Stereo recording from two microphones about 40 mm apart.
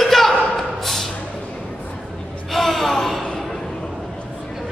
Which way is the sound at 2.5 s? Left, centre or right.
Centre.